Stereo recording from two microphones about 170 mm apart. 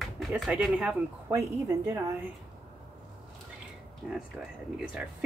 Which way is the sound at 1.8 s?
20° right (ahead or behind).